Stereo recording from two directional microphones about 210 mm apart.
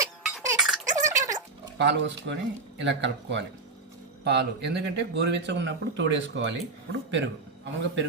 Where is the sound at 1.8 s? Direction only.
55° right (ahead or behind).